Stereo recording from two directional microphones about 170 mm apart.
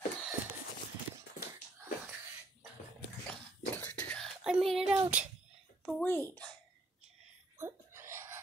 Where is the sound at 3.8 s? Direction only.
10° left (ahead or behind).